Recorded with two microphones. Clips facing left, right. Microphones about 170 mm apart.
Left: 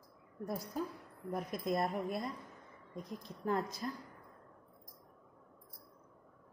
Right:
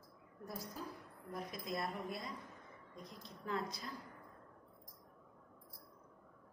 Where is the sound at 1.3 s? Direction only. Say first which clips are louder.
Left 7 dB; 55° left (ahead or behind).